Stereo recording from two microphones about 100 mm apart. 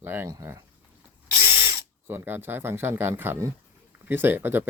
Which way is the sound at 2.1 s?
20° right (ahead or behind).